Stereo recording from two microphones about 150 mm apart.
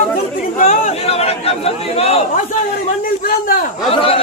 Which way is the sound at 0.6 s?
50° left (ahead or behind).